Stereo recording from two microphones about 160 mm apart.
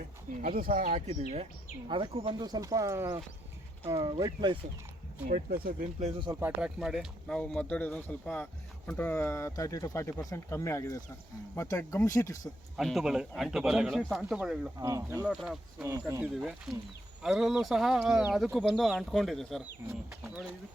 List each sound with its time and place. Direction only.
0.4 s speech: 65° right (ahead or behind)
0.9 s speech: 45° right (ahead or behind); by 4.6 s 30° right (ahead or behind)
6.0 s speech: 40° right (ahead or behind)
6.4 s speech: 5° right (ahead or behind); by 12.4 s 20° left (ahead or behind)
12.7 s speech: centre (ahead or behind)
14.8 s speech: 20° right (ahead or behind)
15.2 s speech: 5° right (ahead or behind)
15.8 s speech: 20° right (ahead or behind)
16.3 s speech: 5° right (ahead or behind)